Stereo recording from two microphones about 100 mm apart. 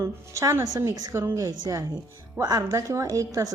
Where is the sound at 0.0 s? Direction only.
25° right (ahead or behind).